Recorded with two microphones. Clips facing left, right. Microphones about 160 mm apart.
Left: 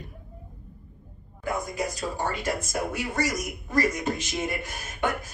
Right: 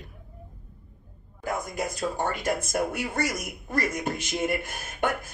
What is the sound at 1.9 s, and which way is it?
A man's voice, 50° right (ahead or behind).